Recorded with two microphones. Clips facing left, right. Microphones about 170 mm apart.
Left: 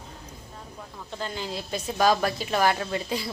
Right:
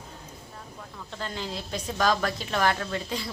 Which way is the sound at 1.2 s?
5° left (ahead or behind).